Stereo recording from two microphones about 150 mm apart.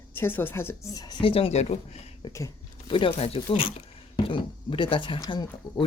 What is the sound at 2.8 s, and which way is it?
Speech, 35° left (ahead or behind).